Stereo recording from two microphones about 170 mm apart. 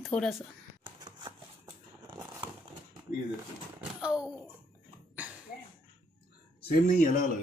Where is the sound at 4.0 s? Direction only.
5° right (ahead or behind).